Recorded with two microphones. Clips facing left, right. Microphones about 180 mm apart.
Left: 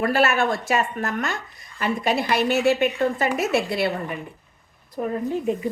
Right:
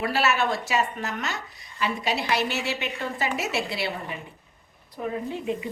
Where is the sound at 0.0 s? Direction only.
50° left (ahead or behind).